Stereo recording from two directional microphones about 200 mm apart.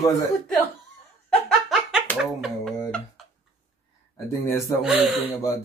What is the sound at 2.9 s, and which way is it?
Tick-tock, 5° left (ahead or behind).